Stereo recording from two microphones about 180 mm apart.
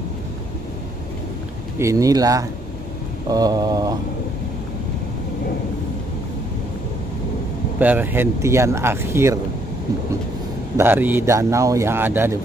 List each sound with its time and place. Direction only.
1.8 s mantra: 15° right (ahead or behind)
7.8 s speech: 10° right (ahead or behind)
10.8 s speech: 10° right (ahead or behind)